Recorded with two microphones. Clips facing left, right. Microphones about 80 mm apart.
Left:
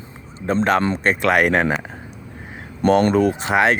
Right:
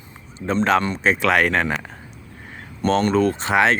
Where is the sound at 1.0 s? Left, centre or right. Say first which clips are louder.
Left 1 dB; centre.